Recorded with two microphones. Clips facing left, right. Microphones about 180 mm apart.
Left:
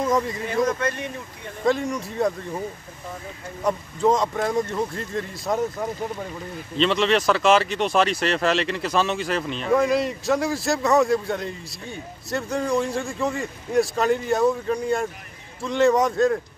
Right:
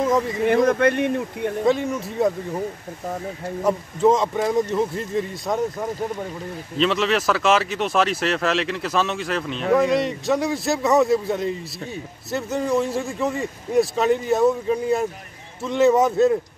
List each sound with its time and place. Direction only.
0.5 s speech: 60° right (ahead or behind)
1.7 s speech: centre (ahead or behind)
3.6 s speech: centre (ahead or behind)
6.8 s speech: centre (ahead or behind)